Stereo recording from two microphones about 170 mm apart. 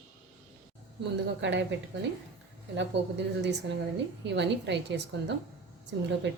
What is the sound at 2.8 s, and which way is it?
A woman's voice, 90° right.